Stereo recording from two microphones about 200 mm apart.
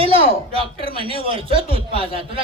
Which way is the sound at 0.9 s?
25° right (ahead or behind).